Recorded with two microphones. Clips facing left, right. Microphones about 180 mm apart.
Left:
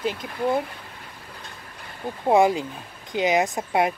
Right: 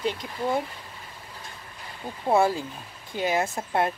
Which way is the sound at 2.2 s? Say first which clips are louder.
Left 4 dB; 15° left (ahead or behind).